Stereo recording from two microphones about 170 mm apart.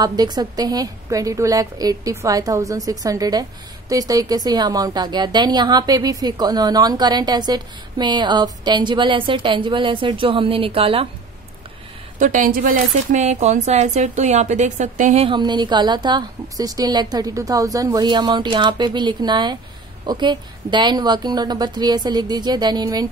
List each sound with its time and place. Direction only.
0.0 s a woman's voice: 25° right (ahead or behind)
12.2 s speech: 50° right (ahead or behind)
12.9 s speech: 45° right (ahead or behind)
15.2 s a woman's voice: 25° right (ahead or behind)